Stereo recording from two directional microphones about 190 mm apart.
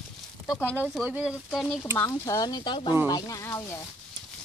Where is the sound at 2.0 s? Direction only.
20° left (ahead or behind).